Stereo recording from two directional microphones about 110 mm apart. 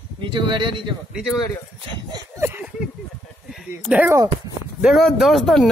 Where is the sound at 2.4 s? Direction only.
20° right (ahead or behind).